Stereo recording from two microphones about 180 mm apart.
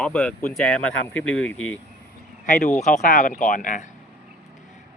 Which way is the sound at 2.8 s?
45° left (ahead or behind).